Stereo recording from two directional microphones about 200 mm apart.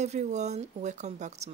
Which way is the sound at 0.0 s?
35° right (ahead or behind).